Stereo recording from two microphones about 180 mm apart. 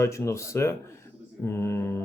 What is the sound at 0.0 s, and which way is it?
Speech, 15° left (ahead or behind).